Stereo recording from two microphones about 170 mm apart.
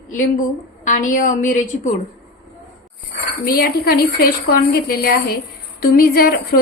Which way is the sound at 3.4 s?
60° left (ahead or behind).